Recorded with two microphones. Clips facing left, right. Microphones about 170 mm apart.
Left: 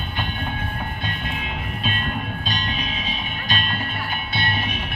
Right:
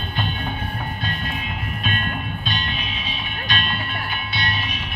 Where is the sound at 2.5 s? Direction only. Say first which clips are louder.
Left 1 dB; 40° left (ahead or behind).